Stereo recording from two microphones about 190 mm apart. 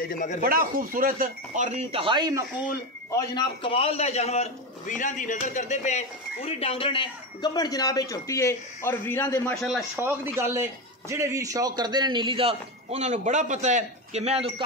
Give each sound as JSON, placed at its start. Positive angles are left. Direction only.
{"t": 0.1, "sound": "speech", "side_deg": 40}
{"t": 0.4, "sound": "speech", "side_deg": -50}
{"t": 3.1, "sound": "a man's voice", "side_deg": 25}
{"t": 9.6, "sound": "a man's voice", "side_deg": 0}
{"t": 9.9, "sound": "a man's voice", "side_deg": -10}